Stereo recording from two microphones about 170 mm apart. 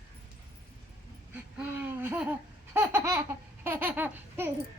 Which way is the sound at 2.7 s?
15° right (ahead or behind).